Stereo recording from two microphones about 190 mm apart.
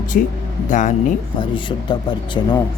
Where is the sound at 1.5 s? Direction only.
25° left (ahead or behind).